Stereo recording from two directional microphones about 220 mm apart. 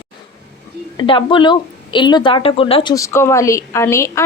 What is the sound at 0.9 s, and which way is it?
A woman's voice, 20° left (ahead or behind).